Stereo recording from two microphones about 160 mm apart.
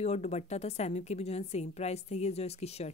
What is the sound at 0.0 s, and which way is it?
Speech, 45° left (ahead or behind).